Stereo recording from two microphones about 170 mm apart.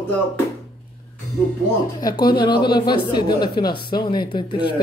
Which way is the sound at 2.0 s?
25° left (ahead or behind).